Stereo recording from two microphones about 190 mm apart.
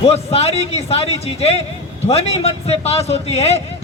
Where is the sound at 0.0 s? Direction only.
35° left (ahead or behind).